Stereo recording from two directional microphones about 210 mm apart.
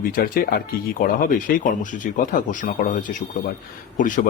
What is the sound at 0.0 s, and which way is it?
Speech, 45° left (ahead or behind).